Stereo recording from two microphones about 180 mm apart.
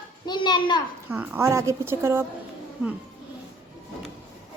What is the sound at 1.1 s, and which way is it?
A woman's voice, 15° right (ahead or behind).